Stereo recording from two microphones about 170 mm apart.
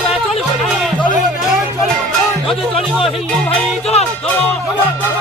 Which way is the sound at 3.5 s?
40° left (ahead or behind).